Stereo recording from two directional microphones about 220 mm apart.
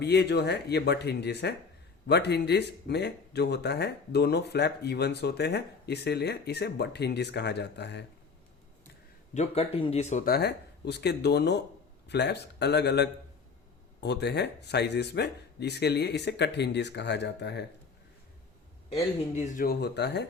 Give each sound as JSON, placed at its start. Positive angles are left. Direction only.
{"t": 0.0, "sound": "speech", "side_deg": 50}
{"t": 9.3, "sound": "speech", "side_deg": 30}
{"t": 19.5, "sound": "speech", "side_deg": 45}